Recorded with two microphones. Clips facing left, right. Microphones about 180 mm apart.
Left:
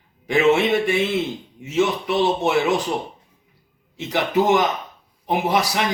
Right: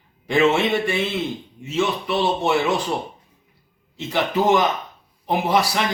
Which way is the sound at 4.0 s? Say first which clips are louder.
Left 1 dB; 15° left (ahead or behind).